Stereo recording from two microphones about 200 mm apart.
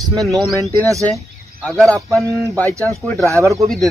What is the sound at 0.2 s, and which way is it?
Speech, centre (ahead or behind).